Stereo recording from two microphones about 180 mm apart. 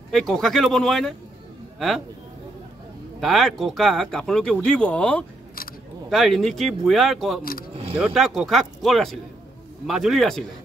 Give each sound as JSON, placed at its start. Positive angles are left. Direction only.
{"t": 0.1, "sound": "speech", "side_deg": 0}
{"t": 3.2, "sound": "speech", "side_deg": 0}
{"t": 7.7, "sound": "a sound", "side_deg": -30}
{"t": 8.0, "sound": "speech", "side_deg": 0}